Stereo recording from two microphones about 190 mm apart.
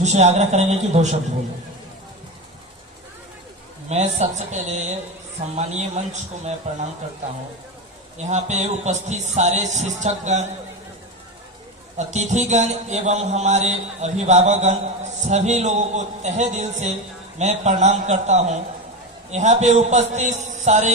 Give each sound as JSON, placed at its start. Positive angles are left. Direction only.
{"t": 0.0, "sound": "a man's voice", "side_deg": -35}
{"t": 3.8, "sound": "a man's voice", "side_deg": -35}
{"t": 8.2, "sound": "a man's voice", "side_deg": -35}
{"t": 11.9, "sound": "a man's voice", "side_deg": -40}